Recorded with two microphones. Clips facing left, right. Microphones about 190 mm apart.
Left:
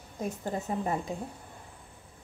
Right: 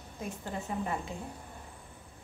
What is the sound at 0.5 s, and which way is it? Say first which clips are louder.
Speech: left 4 dB; 40° left (ahead or behind).